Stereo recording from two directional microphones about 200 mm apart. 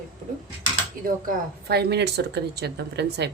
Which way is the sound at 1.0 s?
45° right (ahead or behind).